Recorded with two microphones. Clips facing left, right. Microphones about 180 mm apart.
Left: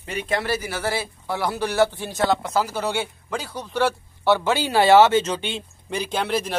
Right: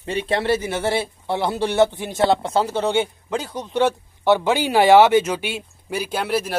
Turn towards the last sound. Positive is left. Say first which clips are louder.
# right 1 dB
turn(degrees=-5)  # may be behind; listen again after turning